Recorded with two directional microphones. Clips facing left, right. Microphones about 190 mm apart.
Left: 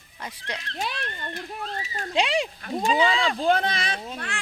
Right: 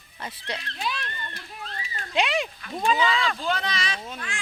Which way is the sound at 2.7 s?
30° left (ahead or behind).